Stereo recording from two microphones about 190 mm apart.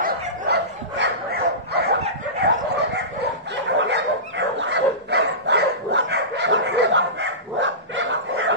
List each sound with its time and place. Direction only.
0.5 s bow-wow: 65° right (ahead or behind)
2.4 s dog: 65° right (ahead or behind)
3.5 s bow-wow: 70° right (ahead or behind)